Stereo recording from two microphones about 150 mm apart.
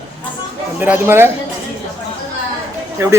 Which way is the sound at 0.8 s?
15° right (ahead or behind).